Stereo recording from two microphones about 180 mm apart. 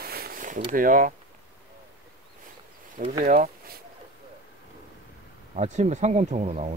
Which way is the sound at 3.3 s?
45° right (ahead or behind).